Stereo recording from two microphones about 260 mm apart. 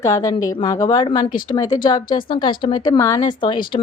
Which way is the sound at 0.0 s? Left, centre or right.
Centre.